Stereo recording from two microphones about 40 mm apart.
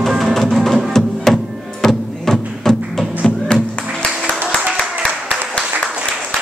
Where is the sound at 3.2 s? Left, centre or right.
Left.